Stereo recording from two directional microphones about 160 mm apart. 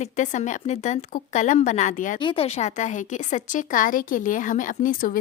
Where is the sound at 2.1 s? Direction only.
30° left (ahead or behind).